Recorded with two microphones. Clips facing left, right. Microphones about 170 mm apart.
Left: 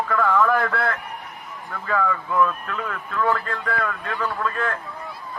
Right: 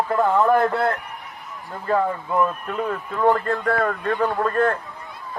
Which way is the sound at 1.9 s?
35° right (ahead or behind).